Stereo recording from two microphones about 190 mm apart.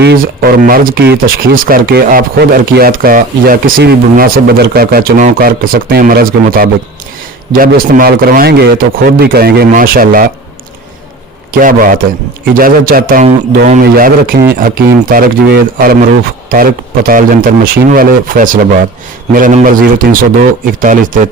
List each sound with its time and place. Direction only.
0.0 s speech: 55° right (ahead or behind)
11.6 s speech: 45° right (ahead or behind)